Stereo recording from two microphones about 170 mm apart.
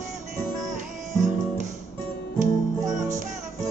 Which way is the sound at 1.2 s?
45° right (ahead or behind).